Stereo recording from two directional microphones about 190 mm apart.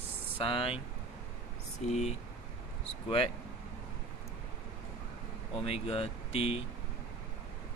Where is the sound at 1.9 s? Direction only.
35° left (ahead or behind).